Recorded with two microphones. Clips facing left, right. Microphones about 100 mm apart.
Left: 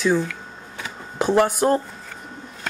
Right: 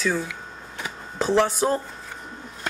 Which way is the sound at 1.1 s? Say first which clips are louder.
Left 2 dB; 10° left (ahead or behind).